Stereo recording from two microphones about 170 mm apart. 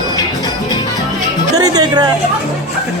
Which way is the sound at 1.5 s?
20° right (ahead or behind).